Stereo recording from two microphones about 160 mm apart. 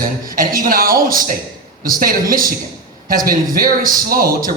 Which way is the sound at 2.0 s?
60° right (ahead or behind).